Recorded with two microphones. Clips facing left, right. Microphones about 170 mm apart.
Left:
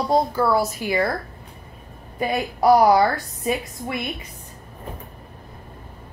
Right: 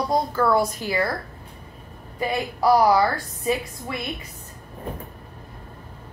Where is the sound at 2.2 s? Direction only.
20° left (ahead or behind).